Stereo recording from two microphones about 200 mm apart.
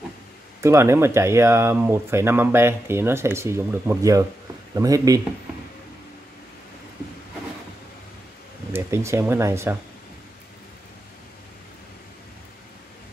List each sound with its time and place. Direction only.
0.6 s speech: 15° right (ahead or behind)
8.7 s speech: 15° right (ahead or behind)